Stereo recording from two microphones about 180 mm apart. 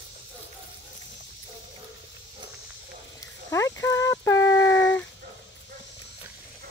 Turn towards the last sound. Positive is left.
turn(degrees=15)  # may be behind; listen again after turning